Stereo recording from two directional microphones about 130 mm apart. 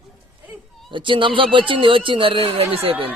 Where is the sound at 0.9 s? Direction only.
40° right (ahead or behind).